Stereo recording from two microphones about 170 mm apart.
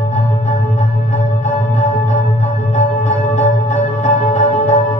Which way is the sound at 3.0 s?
40° left (ahead or behind).